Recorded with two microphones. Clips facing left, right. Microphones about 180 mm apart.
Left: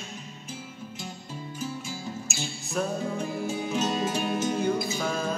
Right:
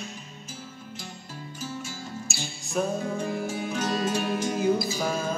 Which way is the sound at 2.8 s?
5° right (ahead or behind).